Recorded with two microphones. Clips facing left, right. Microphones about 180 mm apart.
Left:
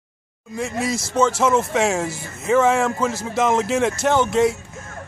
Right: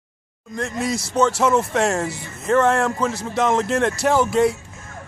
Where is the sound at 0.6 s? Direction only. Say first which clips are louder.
Even; 5° left (ahead or behind).